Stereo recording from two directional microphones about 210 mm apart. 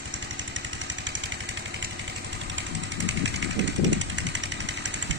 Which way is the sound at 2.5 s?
60° right (ahead or behind).